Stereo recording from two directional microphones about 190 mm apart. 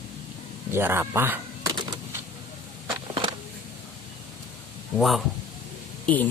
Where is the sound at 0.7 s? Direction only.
10° right (ahead or behind).